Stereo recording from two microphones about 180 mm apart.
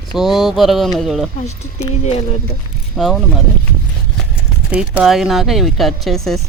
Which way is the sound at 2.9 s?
Centre (ahead or behind).